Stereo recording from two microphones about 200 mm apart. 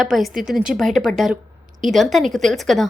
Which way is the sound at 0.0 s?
Centre (ahead or behind).